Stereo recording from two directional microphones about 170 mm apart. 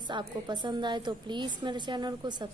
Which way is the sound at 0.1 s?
25° right (ahead or behind).